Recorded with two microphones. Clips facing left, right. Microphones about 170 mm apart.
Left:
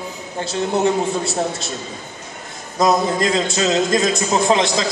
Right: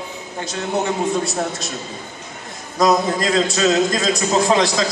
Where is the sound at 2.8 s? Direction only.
25° left (ahead or behind).